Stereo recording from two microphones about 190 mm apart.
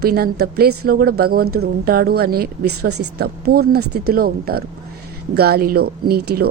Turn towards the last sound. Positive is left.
turn(degrees=-55)  # may be behind; listen again after turning